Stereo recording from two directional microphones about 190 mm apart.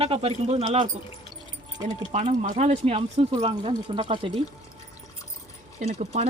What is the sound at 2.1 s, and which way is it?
Speech, 40° right (ahead or behind).